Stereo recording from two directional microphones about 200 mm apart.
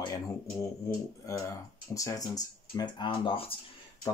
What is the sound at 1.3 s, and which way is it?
Speech, 15° left (ahead or behind).